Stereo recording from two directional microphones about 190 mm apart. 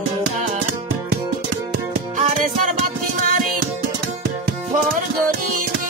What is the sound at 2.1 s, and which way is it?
Music, 40° right (ahead or behind).